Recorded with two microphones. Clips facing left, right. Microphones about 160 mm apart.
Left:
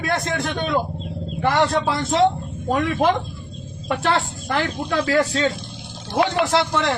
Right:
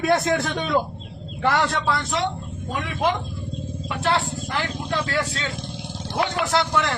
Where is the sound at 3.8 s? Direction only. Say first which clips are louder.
Left 2 dB; 50° left (ahead or behind).